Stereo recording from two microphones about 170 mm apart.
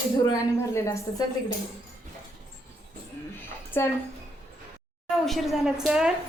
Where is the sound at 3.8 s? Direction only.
15° left (ahead or behind).